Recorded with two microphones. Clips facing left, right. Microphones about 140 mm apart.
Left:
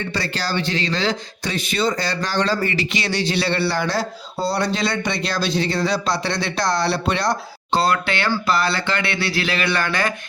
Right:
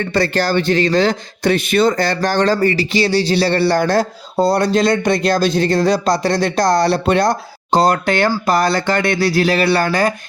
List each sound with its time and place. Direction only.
0.1 s speech: 50° right (ahead or behind); by 10.2 s 35° right (ahead or behind)